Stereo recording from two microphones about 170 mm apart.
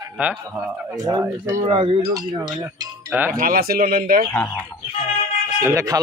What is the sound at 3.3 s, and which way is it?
Speech, 60° right (ahead or behind).